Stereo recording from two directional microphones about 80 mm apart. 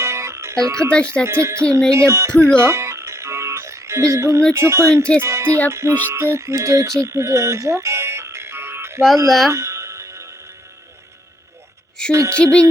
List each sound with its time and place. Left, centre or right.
0.0 s music: right
1.2 s speech: right
2.6 s music: right
4.5 s speech: right
5.2 s music: right
5.6 s speech: right
9.5 s music: right
12.1 s speech: right
12.4 s music: centre